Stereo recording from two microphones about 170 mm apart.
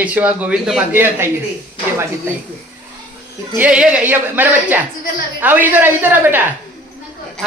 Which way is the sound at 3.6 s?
5° right (ahead or behind).